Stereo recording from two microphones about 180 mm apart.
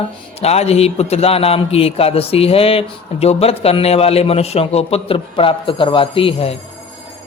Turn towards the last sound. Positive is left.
turn(degrees=30)  # may be behind; listen again after turning